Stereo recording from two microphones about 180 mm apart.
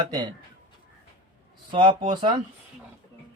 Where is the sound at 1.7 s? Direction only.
25° right (ahead or behind).